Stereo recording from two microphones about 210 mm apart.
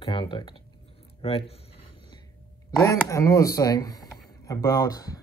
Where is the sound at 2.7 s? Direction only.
10° left (ahead or behind).